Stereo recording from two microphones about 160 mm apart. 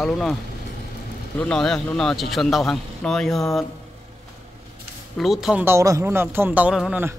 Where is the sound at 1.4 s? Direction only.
5° left (ahead or behind).